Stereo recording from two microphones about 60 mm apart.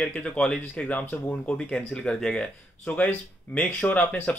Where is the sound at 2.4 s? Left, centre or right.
Left.